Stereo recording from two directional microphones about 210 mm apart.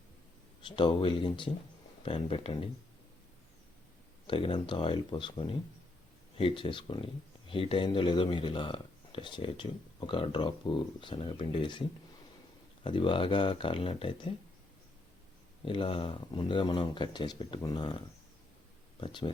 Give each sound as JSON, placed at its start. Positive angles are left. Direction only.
{"t": 0.6, "sound": "speech", "side_deg": 25}
{"t": 4.3, "sound": "speech", "side_deg": 25}
{"t": 15.6, "sound": "speech", "side_deg": 25}